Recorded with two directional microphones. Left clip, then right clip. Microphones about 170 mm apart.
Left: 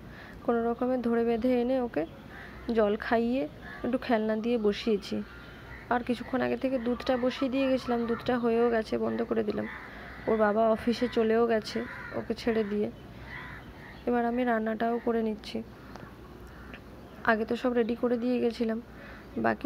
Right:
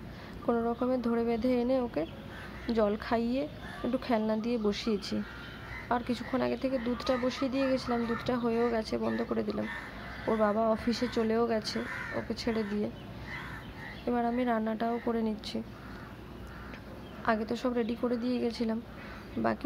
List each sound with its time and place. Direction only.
0.5 s speech: 10° left (ahead or behind)
14.0 s speech: 15° left (ahead or behind)
17.2 s speech: 15° left (ahead or behind)